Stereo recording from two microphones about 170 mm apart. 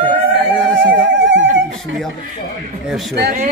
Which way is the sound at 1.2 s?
90° right.